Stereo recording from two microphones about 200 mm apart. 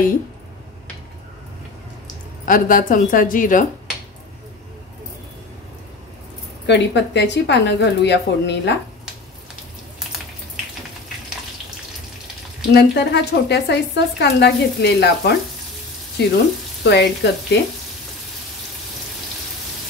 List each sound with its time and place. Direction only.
2.4 s a woman's voice: 45° left (ahead or behind)
6.6 s a woman's voice: 60° left (ahead or behind)
9.9 s frying: centre (ahead or behind)
12.7 s a woman's voice: 55° left (ahead or behind)